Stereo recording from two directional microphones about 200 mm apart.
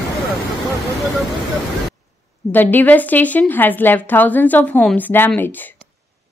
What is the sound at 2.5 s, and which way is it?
A woman's voice, 10° left (ahead or behind).